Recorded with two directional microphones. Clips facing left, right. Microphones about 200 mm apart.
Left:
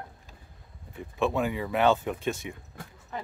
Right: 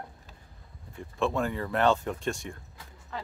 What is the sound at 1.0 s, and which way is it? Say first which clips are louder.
Speech: left 1 dB; 5° left (ahead or behind).